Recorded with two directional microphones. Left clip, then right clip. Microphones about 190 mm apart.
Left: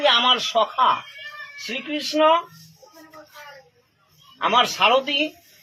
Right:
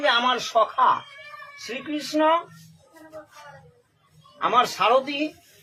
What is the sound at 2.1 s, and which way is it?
Speech, 10° left (ahead or behind).